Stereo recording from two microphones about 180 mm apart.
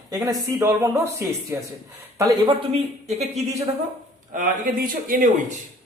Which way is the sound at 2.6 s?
35° right (ahead or behind).